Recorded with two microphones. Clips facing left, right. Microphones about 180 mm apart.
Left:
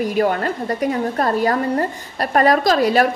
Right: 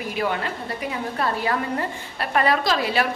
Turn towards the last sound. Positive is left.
turn(degrees=45)  # may be behind; listen again after turning